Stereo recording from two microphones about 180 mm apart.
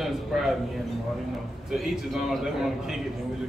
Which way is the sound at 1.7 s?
Centre (ahead or behind).